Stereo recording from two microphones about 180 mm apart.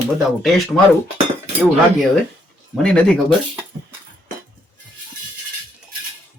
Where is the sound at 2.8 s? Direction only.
5° left (ahead or behind).